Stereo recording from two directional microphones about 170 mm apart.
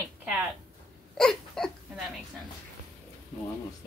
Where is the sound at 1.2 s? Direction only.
Centre (ahead or behind).